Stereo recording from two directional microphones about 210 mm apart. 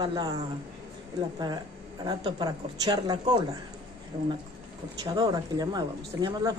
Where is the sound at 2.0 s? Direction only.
20° right (ahead or behind).